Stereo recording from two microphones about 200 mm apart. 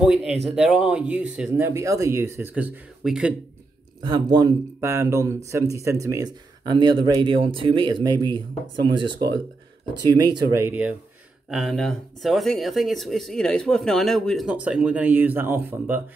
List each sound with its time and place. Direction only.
0.0 s speech: 5° right (ahead or behind)
4.0 s speech: 20° right (ahead or behind)
11.5 s speech: centre (ahead or behind)